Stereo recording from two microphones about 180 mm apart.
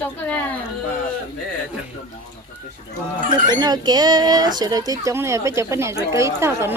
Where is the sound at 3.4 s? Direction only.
25° right (ahead or behind).